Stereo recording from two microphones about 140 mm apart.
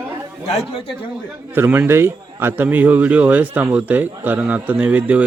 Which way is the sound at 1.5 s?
20° right (ahead or behind).